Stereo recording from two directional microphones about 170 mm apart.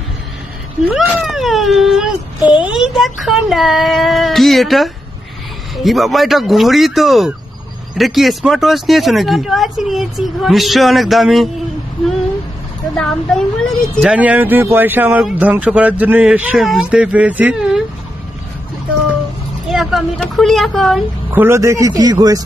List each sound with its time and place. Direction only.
0.8 s speech: 5° right (ahead or behind)
12.9 s speech: centre (ahead or behind)
19.7 s speech: centre (ahead or behind)
21.3 s a man's voice: 15° right (ahead or behind)